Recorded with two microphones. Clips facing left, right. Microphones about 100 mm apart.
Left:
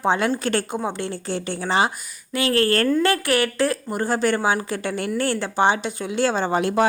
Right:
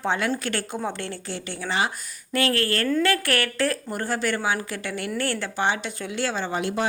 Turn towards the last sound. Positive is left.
turn(degrees=45)  # may be behind; listen again after turning